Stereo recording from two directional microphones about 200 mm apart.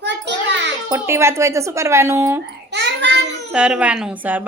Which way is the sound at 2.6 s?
60° right (ahead or behind).